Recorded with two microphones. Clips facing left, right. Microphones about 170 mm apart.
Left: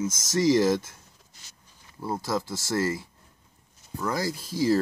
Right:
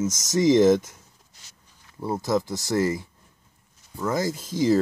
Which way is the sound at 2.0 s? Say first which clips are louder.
Right 4 dB; 20° right (ahead or behind).